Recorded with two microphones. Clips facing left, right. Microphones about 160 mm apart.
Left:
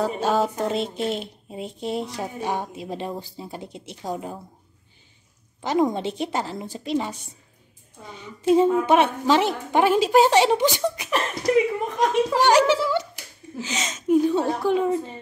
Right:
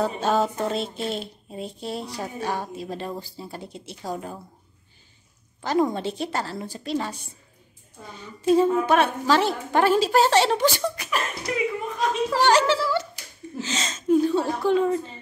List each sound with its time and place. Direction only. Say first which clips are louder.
0.0 s speech: left 1 dB; 10° left (ahead or behind)
5.6 s a woman's voice: left 1 dB; 20° left (ahead or behind)
11.1 s speech: left 5 dB; 30° left (ahead or behind)
12.3 s a woman's voice: even; 15° left (ahead or behind)